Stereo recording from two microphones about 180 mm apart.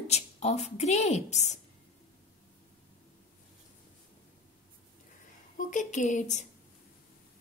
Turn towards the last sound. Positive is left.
turn(degrees=40)  # may be behind; listen again after turning